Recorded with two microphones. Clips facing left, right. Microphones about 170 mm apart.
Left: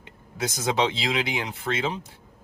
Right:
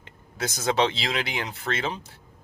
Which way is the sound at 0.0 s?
15° left (ahead or behind).